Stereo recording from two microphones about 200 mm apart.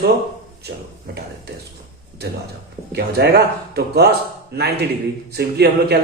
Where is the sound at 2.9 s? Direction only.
55° right (ahead or behind).